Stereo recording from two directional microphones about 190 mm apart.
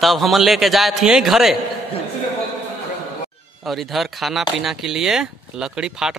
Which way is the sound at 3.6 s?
Centre (ahead or behind).